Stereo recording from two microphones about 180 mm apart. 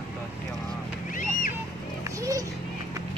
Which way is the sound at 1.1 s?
45° left (ahead or behind).